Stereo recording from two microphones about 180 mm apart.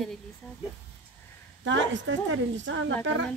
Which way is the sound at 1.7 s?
90° right.